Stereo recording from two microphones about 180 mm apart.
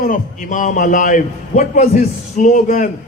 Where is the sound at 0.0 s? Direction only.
45° left (ahead or behind).